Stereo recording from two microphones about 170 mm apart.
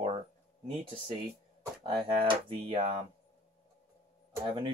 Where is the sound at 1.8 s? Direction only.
30° right (ahead or behind).